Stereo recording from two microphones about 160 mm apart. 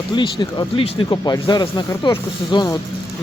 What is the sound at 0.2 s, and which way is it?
Speech, 30° left (ahead or behind).